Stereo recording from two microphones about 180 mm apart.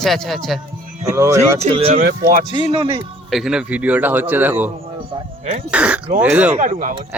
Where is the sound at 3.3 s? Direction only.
Centre (ahead or behind).